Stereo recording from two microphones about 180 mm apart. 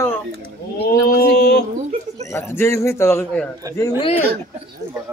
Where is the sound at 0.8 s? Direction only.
65° left (ahead or behind).